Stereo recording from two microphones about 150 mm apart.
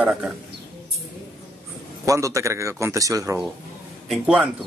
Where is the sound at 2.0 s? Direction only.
20° right (ahead or behind).